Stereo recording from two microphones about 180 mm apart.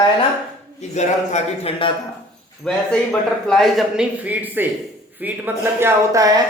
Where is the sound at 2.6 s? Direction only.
5° left (ahead or behind); by 6.4 s 20° right (ahead or behind).